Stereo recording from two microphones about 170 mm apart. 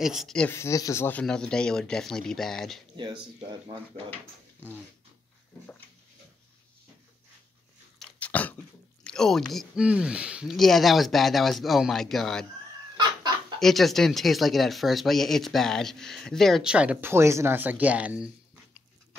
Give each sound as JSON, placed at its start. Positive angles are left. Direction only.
{"t": 0.0, "sound": "speech", "side_deg": 0}
{"t": 0.6, "sound": "speech", "side_deg": 20}
{"t": 8.0, "sound": "a sound", "side_deg": 10}
{"t": 9.0, "sound": "speech", "side_deg": 5}
{"t": 12.9, "sound": "chicken", "side_deg": -25}
{"t": 13.6, "sound": "speech", "side_deg": 0}